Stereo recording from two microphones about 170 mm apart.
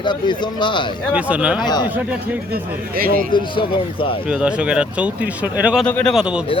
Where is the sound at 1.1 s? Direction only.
10° right (ahead or behind).